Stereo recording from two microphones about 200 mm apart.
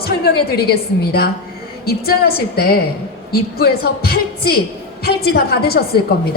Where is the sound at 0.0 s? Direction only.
50° left (ahead or behind).